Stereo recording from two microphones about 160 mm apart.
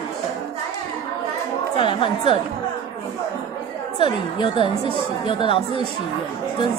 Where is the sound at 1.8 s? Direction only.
30° left (ahead or behind).